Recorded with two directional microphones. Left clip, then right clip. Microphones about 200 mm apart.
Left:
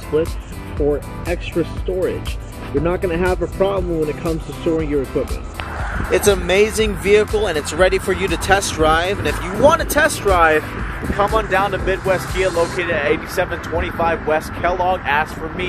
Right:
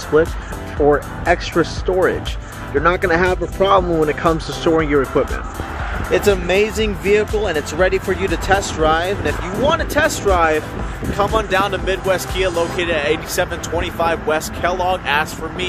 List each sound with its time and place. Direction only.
1.2 s speech: centre (ahead or behind)
6.1 s speech: 25° left (ahead or behind)
11.1 s speech: 20° right (ahead or behind)